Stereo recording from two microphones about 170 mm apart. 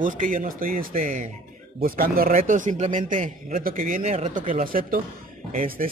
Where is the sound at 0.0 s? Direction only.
50° right (ahead or behind).